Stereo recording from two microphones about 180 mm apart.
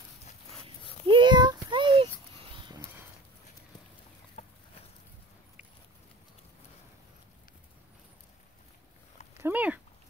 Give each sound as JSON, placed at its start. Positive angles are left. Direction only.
{"t": 1.0, "sound": "child singing", "side_deg": -25}
{"t": 4.4, "sound": "a sound", "side_deg": 35}
{"t": 9.4, "sound": "cat", "side_deg": -10}